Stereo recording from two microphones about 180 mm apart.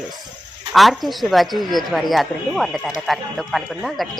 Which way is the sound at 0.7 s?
Centre (ahead or behind).